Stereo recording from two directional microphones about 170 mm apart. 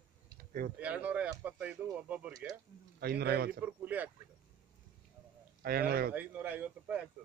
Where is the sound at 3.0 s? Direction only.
65° right (ahead or behind).